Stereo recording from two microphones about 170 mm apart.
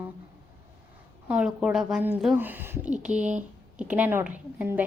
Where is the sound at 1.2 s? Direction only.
5° right (ahead or behind).